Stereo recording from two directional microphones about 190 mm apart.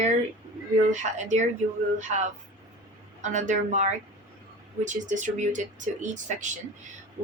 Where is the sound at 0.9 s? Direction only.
40° right (ahead or behind).